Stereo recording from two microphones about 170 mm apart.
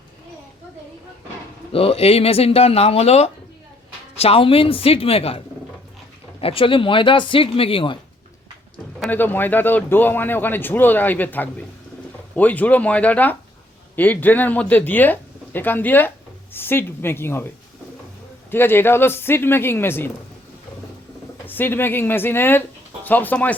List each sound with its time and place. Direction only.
1.7 s speech: 35° left (ahead or behind)
6.4 s speech: 30° left (ahead or behind)
9.0 s a man's voice: 10° left (ahead or behind)
18.5 s a man's voice: 15° left (ahead or behind)
21.4 s a man's voice: 10° left (ahead or behind)